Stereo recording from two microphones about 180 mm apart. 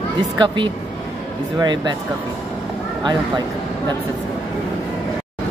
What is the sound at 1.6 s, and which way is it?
Speech, 25° right (ahead or behind).